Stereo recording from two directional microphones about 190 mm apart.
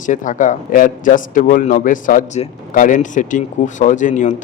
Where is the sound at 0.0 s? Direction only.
40° left (ahead or behind).